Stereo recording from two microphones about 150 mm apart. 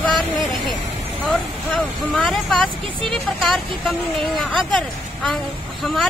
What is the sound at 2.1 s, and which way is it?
Speech, 5° left (ahead or behind).